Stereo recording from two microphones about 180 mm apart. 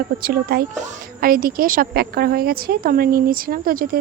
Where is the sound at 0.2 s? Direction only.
55° right (ahead or behind).